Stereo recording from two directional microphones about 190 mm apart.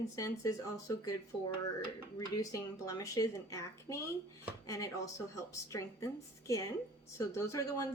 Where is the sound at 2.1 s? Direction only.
15° left (ahead or behind).